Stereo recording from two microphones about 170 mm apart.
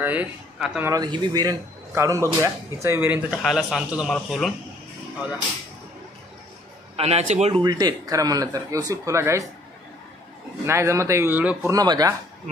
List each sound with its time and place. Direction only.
0.0 s a man's voice: 10° right (ahead or behind)
3.3 s a man's voice: centre (ahead or behind)
7.0 s a man's voice: 40° right (ahead or behind)
7.6 s speech: 25° right (ahead or behind)
10.6 s a man's voice: 15° right (ahead or behind)